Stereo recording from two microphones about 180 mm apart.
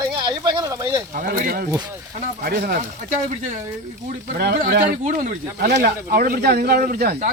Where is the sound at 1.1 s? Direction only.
50° right (ahead or behind).